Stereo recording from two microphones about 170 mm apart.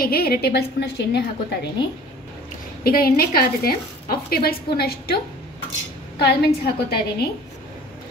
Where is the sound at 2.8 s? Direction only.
60° left (ahead or behind).